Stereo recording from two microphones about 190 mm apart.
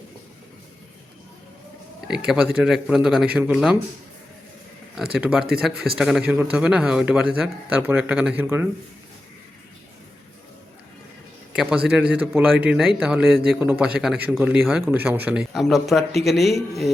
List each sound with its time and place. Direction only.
2.0 s a man's voice: 5° right (ahead or behind)
5.1 s a man's voice: 5° right (ahead or behind)
11.5 s a man's voice: 5° right (ahead or behind)